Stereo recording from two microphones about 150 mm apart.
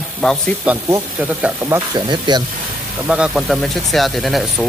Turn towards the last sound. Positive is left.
turn(degrees=0)  # may be behind; listen again after turning